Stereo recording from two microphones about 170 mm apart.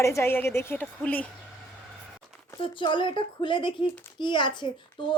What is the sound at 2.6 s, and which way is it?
Speech, 30° left (ahead or behind).